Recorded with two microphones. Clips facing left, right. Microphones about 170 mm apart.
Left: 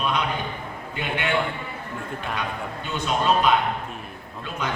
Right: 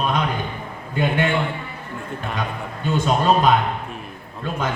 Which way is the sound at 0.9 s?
45° right (ahead or behind).